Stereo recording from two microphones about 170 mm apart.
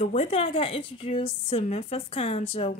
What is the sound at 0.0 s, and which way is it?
A woman's voice, 40° left (ahead or behind).